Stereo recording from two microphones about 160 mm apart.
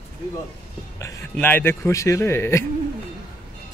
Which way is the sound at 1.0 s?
20° left (ahead or behind).